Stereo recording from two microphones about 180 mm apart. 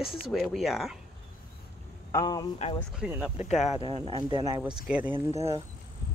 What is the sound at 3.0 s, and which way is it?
Speech, 10° right (ahead or behind).